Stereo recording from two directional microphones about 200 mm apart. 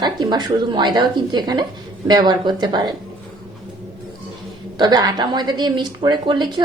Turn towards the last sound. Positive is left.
turn(degrees=-20)  # may be behind; listen again after turning